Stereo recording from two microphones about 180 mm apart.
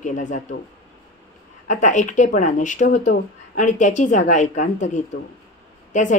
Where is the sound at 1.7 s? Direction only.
45° left (ahead or behind).